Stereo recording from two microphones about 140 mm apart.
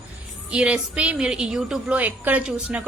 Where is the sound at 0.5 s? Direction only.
10° right (ahead or behind).